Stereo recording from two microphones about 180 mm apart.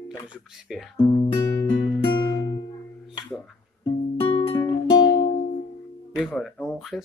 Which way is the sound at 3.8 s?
25° left (ahead or behind).